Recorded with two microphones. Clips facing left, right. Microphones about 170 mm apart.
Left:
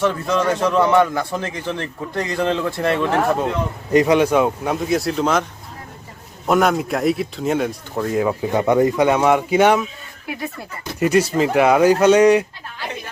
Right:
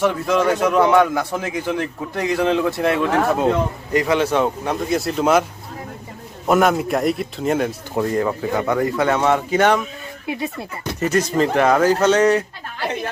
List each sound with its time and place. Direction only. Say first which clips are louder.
0.0 s a man's voice: right 1 dB; 10° right (ahead or behind)
3.9 s speech: left 4 dB; 20° left (ahead or behind); by 5.5 s 5° right (ahead or behind)
6.5 s a man's voice: right 1 dB; centre (ahead or behind)
8.5 s speech: left 5 dB; 20° left (ahead or behind)
10.2 s speech: right 3 dB; 20° right (ahead or behind)
11.0 s speech: left 2 dB; 10° left (ahead or behind)